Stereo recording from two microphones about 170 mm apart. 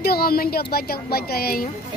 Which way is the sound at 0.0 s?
65° left (ahead or behind).